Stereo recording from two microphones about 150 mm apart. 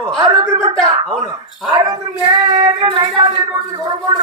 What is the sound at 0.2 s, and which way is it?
Speech, 20° right (ahead or behind).